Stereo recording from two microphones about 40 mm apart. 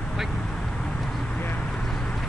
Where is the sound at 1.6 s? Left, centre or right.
Centre.